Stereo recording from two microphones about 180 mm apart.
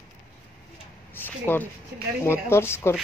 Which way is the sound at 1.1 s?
10° left (ahead or behind).